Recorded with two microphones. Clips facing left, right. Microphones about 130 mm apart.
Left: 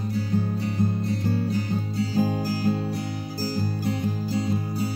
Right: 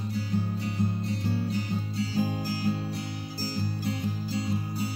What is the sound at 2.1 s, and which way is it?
Music, 45° left (ahead or behind).